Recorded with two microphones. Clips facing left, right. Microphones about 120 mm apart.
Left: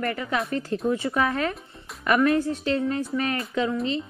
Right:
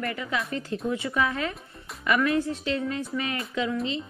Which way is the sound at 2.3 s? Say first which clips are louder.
Left 3 dB; 25° right (ahead or behind).